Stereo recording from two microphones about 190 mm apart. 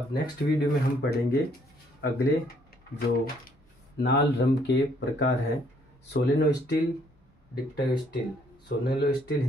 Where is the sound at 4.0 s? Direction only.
60° left (ahead or behind).